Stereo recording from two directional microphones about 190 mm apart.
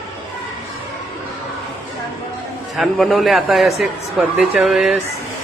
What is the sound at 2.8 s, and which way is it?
A man's voice, centre (ahead or behind).